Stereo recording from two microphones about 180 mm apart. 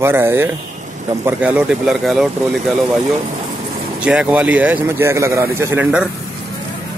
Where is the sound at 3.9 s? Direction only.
5° right (ahead or behind).